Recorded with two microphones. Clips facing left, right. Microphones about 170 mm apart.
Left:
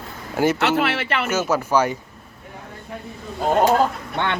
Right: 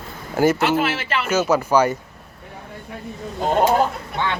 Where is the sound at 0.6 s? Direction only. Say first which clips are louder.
Even; 70° left (ahead or behind).